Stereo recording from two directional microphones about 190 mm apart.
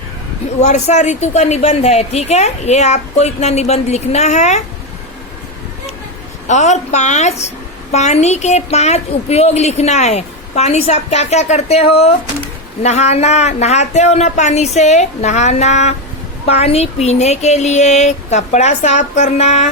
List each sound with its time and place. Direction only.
0.6 s speech: 35° left (ahead or behind)
6.5 s speech: 40° left (ahead or behind)